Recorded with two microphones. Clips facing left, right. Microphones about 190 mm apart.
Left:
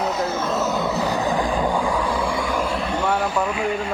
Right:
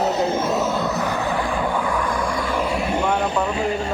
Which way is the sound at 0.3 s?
15° right (ahead or behind).